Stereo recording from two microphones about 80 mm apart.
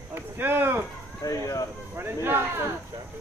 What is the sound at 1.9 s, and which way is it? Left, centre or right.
Speech, right.